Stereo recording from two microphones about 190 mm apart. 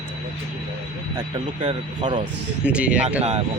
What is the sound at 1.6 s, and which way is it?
Speech, 25° right (ahead or behind).